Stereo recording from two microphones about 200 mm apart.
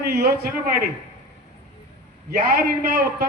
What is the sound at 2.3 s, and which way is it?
Speech, 50° right (ahead or behind).